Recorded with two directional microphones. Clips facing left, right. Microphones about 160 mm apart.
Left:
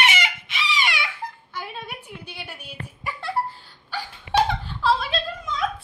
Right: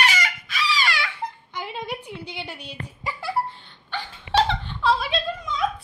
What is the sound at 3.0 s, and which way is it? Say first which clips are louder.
Giggle: right 1 dB; 5° right (ahead or behind).